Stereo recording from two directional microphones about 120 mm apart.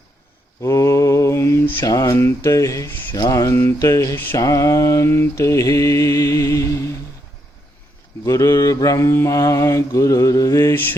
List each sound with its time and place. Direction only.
0.6 s mantra: 25° left (ahead or behind)
8.2 s mantra: 25° left (ahead or behind)